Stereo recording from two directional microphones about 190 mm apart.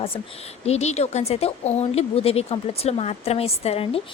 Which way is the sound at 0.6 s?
35° left (ahead or behind).